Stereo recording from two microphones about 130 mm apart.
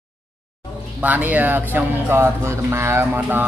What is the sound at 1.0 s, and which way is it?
Speech, 10° right (ahead or behind).